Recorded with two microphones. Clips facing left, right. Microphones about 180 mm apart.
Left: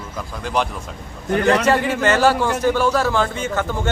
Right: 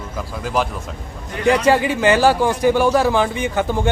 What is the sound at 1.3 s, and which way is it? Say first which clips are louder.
Speech: left 1 dB; 65° left (ahead or behind).